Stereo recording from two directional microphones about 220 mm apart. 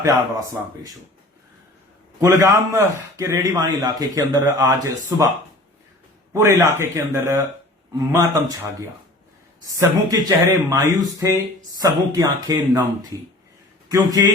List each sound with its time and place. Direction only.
0.0 s a man's voice: 15° right (ahead or behind)
2.4 s a man's voice: 15° right (ahead or behind)
6.3 s a man's voice: 15° right (ahead or behind)